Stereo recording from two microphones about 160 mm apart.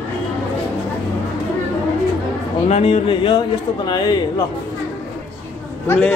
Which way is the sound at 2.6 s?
40° left (ahead or behind).